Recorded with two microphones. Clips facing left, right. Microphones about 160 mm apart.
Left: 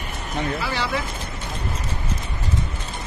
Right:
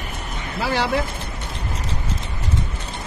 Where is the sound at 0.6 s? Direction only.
70° right (ahead or behind).